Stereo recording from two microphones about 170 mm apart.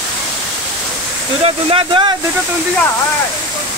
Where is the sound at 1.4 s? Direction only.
30° right (ahead or behind).